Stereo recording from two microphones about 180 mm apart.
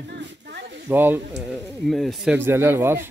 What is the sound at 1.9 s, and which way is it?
Speech, centre (ahead or behind).